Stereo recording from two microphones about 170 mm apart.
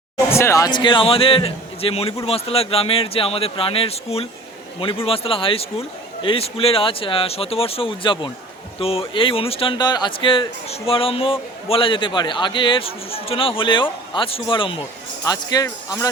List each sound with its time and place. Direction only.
0.3 s speech: 15° left (ahead or behind)